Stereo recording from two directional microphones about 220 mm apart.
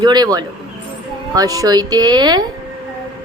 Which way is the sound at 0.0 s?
20° right (ahead or behind).